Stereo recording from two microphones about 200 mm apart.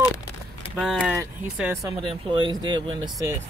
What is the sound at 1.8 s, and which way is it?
Speech, 25° right (ahead or behind).